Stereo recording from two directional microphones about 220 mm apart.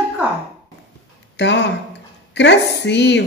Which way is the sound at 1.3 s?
55° left (ahead or behind).